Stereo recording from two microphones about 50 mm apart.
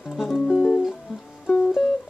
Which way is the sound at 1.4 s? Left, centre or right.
Left.